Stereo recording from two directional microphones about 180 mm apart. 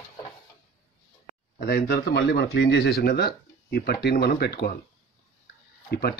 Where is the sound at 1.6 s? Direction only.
65° left (ahead or behind).